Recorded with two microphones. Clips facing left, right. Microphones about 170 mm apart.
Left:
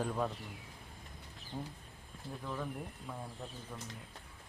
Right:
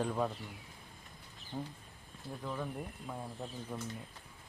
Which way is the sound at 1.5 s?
Centre (ahead or behind).